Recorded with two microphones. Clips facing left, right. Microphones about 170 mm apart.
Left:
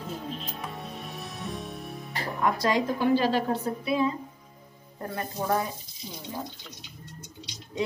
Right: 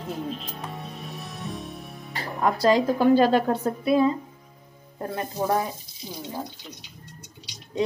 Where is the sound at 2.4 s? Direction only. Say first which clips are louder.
Right 5 dB; 35° right (ahead or behind).